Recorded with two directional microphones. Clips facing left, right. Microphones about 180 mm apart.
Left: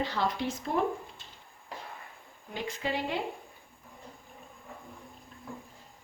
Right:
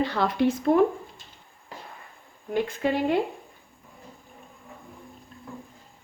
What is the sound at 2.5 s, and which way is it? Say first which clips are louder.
Speech: right 9 dB; 55° right (ahead or behind).